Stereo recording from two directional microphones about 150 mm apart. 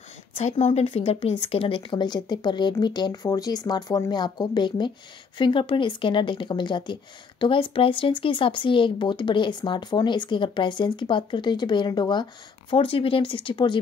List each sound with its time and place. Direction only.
0.3 s speech: 45° left (ahead or behind)